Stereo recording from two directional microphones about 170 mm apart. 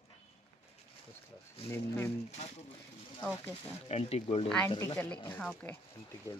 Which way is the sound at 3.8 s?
35° left (ahead or behind).